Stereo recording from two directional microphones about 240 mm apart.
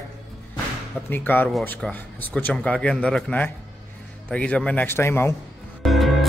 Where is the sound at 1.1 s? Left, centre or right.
Centre.